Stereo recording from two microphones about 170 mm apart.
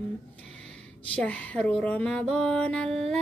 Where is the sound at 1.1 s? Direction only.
5° left (ahead or behind).